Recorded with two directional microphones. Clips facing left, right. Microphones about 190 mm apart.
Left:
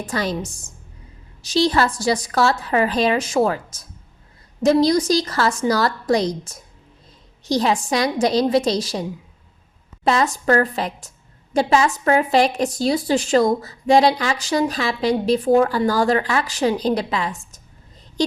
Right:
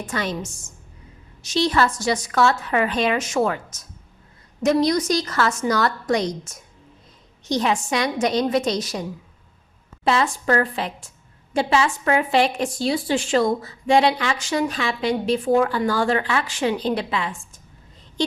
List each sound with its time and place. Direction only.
0.0 s a woman's voice: 35° left (ahead or behind)